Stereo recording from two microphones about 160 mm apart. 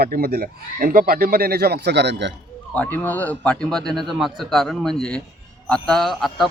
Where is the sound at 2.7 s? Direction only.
10° left (ahead or behind).